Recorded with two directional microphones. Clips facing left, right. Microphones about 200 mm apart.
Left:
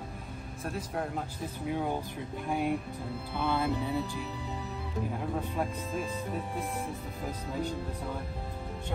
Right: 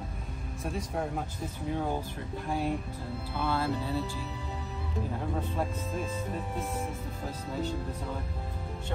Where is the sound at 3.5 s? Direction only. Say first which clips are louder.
Left 1 dB; 15° left (ahead or behind).